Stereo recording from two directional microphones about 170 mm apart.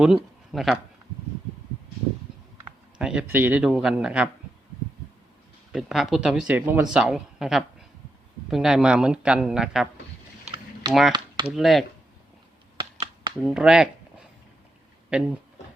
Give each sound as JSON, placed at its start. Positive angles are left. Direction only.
{"t": 0.5, "sound": "speech", "side_deg": 0}
{"t": 3.0, "sound": "speech", "side_deg": -5}
{"t": 5.7, "sound": "speech", "side_deg": 0}
{"t": 10.4, "sound": "rowboat", "side_deg": -30}
{"t": 11.1, "sound": "computer keyboard", "side_deg": -30}
{"t": 11.5, "sound": "speech", "side_deg": 0}
{"t": 12.8, "sound": "a sound", "side_deg": -30}
{"t": 13.4, "sound": "speech", "side_deg": -5}
{"t": 15.1, "sound": "speech", "side_deg": -5}